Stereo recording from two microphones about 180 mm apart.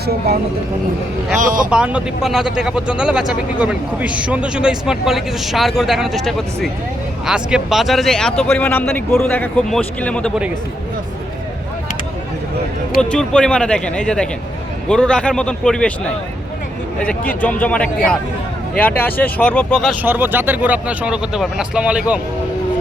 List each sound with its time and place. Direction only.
1.4 s speech: 45° right (ahead or behind)
1.7 s speech: 5° right (ahead or behind)
13.0 s speech: 5° left (ahead or behind)
20.0 s speech: 10° right (ahead or behind)